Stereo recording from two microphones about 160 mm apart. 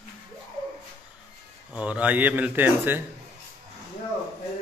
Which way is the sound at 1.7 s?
10° right (ahead or behind).